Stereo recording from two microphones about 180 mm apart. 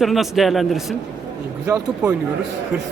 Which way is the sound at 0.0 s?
Centre (ahead or behind).